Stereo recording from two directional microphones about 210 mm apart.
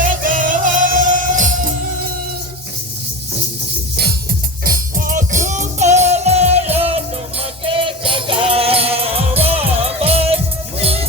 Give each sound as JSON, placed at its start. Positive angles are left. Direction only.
{"t": 0.0, "sound": "music", "side_deg": -40}
{"t": 4.6, "sound": "music", "side_deg": -40}